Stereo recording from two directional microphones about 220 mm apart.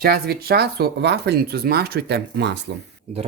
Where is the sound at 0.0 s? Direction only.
45° right (ahead or behind).